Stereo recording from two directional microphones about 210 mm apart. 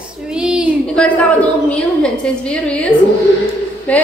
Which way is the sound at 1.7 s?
5° left (ahead or behind).